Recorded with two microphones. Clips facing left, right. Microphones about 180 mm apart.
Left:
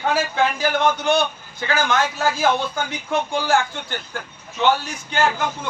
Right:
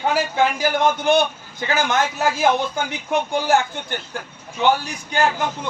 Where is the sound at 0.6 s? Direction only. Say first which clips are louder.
Right 1 dB; 15° right (ahead or behind).